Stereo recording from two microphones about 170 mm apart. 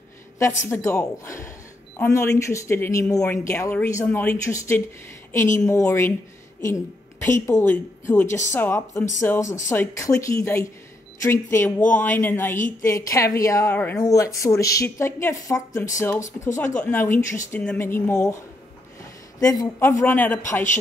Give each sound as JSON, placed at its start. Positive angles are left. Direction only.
{"t": 0.7, "sound": "speech", "side_deg": 15}
{"t": 7.4, "sound": "a woman's voice", "side_deg": 15}
{"t": 19.4, "sound": "speech", "side_deg": 20}